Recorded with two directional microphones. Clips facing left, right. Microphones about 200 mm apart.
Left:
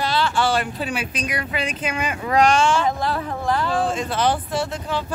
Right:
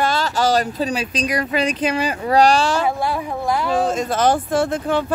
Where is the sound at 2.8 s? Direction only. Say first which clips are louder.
Right 2 dB; 10° right (ahead or behind).